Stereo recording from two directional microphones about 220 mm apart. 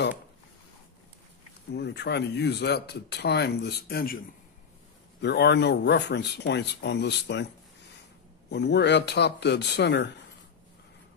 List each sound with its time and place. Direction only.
1.7 s speech: 50° left (ahead or behind)
5.2 s speech: 50° left (ahead or behind)
8.5 s speech: 50° left (ahead or behind)